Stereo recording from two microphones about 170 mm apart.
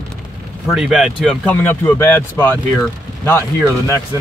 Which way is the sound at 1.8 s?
15° left (ahead or behind).